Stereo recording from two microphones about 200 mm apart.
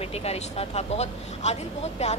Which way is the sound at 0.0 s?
30° left (ahead or behind).